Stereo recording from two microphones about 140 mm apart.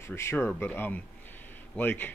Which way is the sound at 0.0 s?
20° left (ahead or behind).